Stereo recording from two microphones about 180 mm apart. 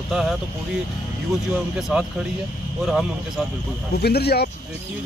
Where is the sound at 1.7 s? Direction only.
Centre (ahead or behind).